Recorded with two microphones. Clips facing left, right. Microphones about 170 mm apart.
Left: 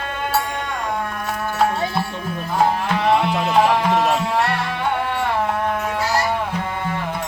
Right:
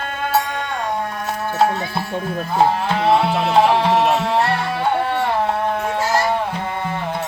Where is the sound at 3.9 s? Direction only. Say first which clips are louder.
Right 2 dB; centre (ahead or behind).